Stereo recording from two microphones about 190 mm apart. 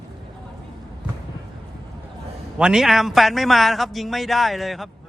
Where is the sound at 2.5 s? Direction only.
5° right (ahead or behind).